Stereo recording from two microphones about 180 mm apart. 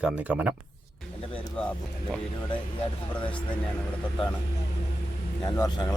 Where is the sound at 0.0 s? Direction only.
5° right (ahead or behind).